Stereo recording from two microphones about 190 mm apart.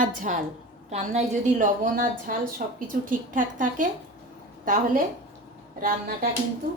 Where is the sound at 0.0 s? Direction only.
45° right (ahead or behind).